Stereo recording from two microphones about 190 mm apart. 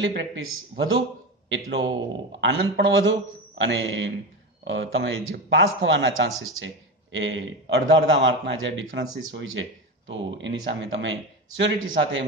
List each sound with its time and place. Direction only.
0.0 s speech: 75° right (ahead or behind)
2.4 s a man's voice: 80° right